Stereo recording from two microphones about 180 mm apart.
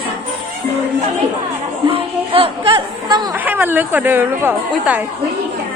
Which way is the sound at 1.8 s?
30° right (ahead or behind).